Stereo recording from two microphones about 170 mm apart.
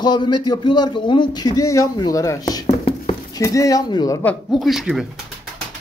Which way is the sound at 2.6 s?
35° left (ahead or behind).